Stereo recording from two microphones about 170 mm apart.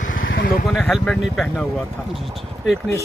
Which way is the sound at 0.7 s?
Centre (ahead or behind).